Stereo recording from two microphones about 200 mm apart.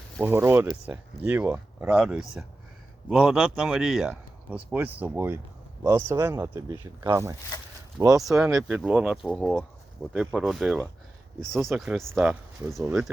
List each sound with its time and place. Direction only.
0.2 s speech: 10° right (ahead or behind)
8.3 s speech: centre (ahead or behind)